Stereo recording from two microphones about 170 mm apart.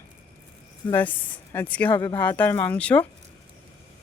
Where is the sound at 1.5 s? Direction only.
10° left (ahead or behind).